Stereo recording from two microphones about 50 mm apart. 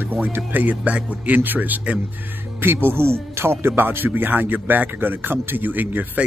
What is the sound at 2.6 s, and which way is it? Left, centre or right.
Speech, right.